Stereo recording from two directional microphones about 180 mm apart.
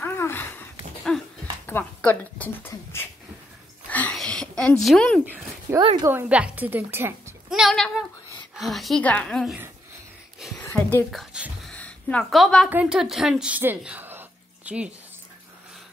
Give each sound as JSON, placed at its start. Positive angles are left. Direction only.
{"t": 0.0, "sound": "a sound", "side_deg": 15}
{"t": 1.7, "sound": "a woman's voice", "side_deg": 10}
{"t": 3.9, "sound": "a sound", "side_deg": 5}
{"t": 5.2, "sound": "dog", "side_deg": -10}
{"t": 5.8, "sound": "a woman's voice", "side_deg": -25}
{"t": 6.0, "sound": "a woman's voice", "side_deg": -10}
{"t": 10.6, "sound": "a woman's voice", "side_deg": 15}
{"t": 11.1, "sound": "a sound", "side_deg": -5}
{"t": 12.6, "sound": "a woman's voice", "side_deg": -5}